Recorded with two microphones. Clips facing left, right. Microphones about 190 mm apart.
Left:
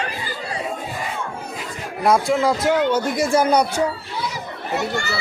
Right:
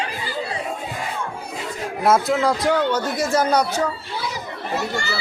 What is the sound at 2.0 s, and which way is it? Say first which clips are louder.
Speech: left 1 dB; centre (ahead or behind).